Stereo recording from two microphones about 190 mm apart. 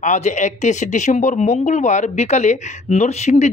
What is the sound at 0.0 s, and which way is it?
Speech, 40° left (ahead or behind).